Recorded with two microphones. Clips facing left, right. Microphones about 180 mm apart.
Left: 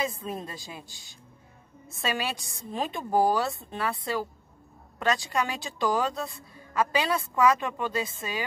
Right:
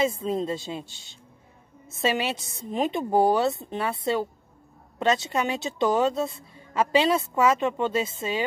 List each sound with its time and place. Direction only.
0.0 s a woman's voice: 25° right (ahead or behind)